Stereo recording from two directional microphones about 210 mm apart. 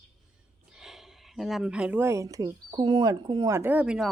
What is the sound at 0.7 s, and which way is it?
Speech, centre (ahead or behind).